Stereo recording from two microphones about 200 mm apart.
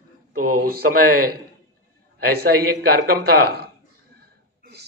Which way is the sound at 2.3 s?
50° right (ahead or behind).